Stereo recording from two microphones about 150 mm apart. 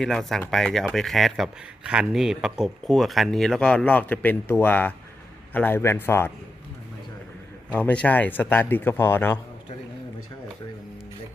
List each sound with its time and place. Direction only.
0.0 s speech: centre (ahead or behind)
7.7 s speech: 10° left (ahead or behind)